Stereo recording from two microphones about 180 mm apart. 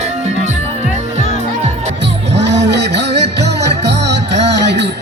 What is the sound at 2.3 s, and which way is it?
Music, 75° right (ahead or behind).